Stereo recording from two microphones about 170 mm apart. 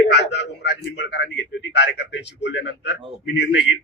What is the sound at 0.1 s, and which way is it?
A man's voice, 90° left.